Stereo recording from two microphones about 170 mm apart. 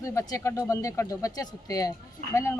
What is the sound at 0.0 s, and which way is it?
Speech, 20° left (ahead or behind).